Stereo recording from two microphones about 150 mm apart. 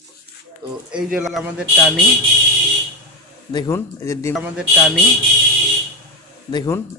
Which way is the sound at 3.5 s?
30° left (ahead or behind).